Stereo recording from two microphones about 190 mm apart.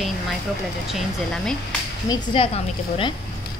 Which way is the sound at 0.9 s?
Centre (ahead or behind).